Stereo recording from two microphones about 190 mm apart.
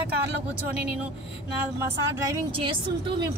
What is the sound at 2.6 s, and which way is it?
Speech, 25° right (ahead or behind).